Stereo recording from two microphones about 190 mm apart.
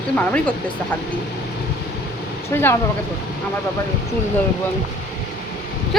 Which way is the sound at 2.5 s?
15° left (ahead or behind).